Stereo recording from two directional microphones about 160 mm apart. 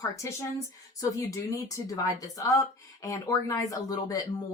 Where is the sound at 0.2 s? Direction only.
20° left (ahead or behind).